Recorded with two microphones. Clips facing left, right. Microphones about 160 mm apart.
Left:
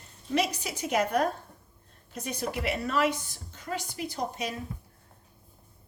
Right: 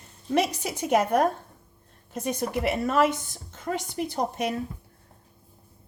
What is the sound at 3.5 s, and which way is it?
Speech, 55° right (ahead or behind).